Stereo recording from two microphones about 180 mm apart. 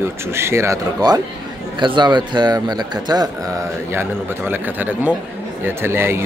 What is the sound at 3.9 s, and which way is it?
Speech, 10° right (ahead or behind).